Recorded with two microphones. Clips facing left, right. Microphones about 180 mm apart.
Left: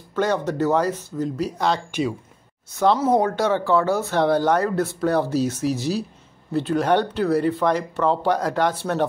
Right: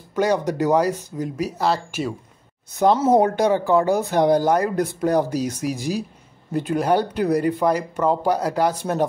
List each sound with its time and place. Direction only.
0.1 s speech: 10° right (ahead or behind)
3.0 s speech: 25° right (ahead or behind)